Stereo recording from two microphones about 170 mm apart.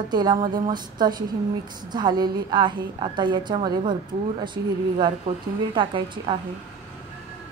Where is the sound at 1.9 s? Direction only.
25° right (ahead or behind).